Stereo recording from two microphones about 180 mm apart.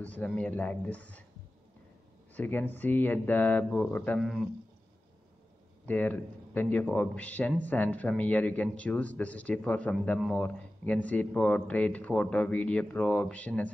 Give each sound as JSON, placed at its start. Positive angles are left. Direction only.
{"t": 0.0, "sound": "speech", "side_deg": 10}
{"t": 2.3, "sound": "speech", "side_deg": 10}
{"t": 5.9, "sound": "speech", "side_deg": 10}